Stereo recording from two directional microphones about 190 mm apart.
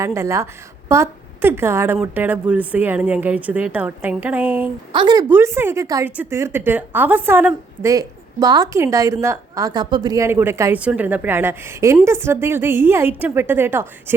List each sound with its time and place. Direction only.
0.0 s a woman's voice: 15° right (ahead or behind)
4.9 s a woman's voice: 25° right (ahead or behind)
5.3 s a woman's voice: 15° right (ahead or behind)